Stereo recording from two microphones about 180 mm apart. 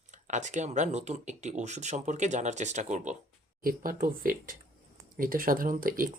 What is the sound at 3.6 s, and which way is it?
Speech, 50° right (ahead or behind).